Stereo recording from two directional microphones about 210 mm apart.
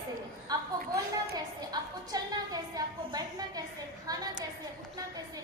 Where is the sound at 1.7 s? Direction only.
20° right (ahead or behind).